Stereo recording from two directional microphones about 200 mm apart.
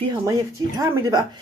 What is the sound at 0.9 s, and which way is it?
Speech, 15° right (ahead or behind).